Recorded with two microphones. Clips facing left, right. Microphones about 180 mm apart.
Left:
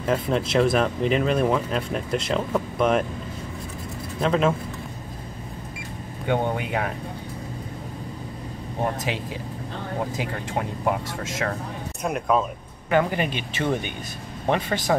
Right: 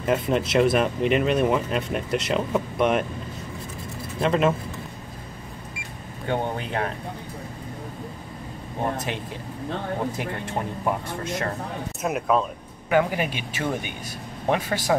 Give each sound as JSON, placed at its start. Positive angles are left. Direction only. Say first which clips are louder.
{"t": 0.0, "sound": "speech", "louder": "right 1 dB", "side_deg": -5}
{"t": 4.2, "sound": "speech", "louder": "even", "side_deg": -5}
{"t": 6.2, "sound": "a man's voice", "louder": "left 2 dB", "side_deg": 15}
{"t": 8.9, "sound": "speech", "louder": "left 1 dB", "side_deg": 90}
{"t": 11.1, "sound": "speech", "louder": "right 2 dB", "side_deg": 90}
{"t": 12.0, "sound": "speech", "louder": "even", "side_deg": 0}